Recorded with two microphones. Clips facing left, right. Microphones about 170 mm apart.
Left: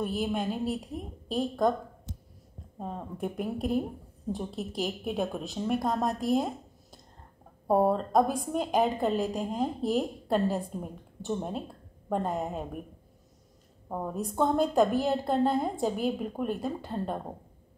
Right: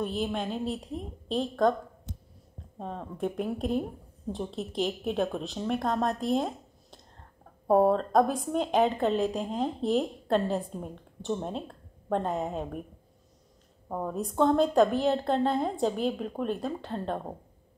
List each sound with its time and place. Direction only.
0.0 s a woman's voice: 5° left (ahead or behind)
2.1 s a sound: 60° right (ahead or behind)
2.8 s a woman's voice: 5° left (ahead or behind)
13.8 s a woman's voice: 5° left (ahead or behind)